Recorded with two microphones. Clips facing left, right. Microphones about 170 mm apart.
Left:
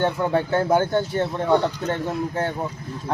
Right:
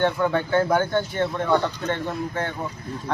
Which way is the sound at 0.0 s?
30° left (ahead or behind).